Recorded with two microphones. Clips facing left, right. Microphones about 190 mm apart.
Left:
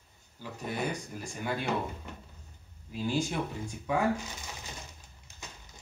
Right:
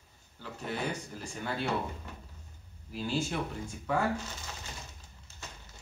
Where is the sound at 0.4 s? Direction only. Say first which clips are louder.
Left 1 dB; 10° left (ahead or behind).